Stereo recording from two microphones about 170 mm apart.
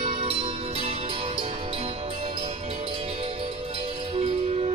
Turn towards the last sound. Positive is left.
turn(degrees=-35)  # may be behind; listen again after turning